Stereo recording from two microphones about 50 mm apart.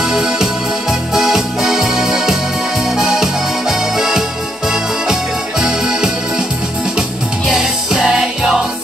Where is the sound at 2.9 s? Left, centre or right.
Centre.